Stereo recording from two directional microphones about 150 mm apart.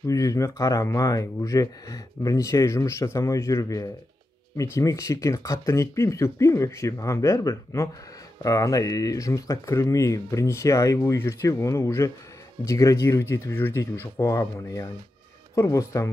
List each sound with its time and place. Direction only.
0.0 s speech: 20° left (ahead or behind)